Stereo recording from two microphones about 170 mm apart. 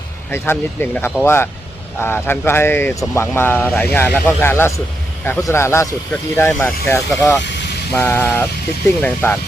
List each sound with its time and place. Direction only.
0.3 s speech: 15° left (ahead or behind)